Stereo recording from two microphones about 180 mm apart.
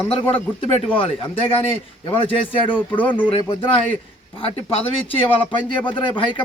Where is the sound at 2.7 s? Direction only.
25° left (ahead or behind).